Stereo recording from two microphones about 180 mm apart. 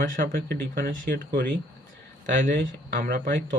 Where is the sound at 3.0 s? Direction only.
50° right (ahead or behind).